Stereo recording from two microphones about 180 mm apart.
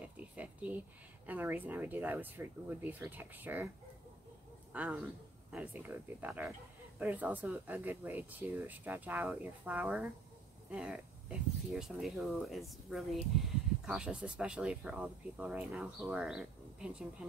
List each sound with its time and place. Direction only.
0.0 s a sound: 5° right (ahead or behind)
1.2 s speech: 10° right (ahead or behind)
4.7 s speech: 10° right (ahead or behind)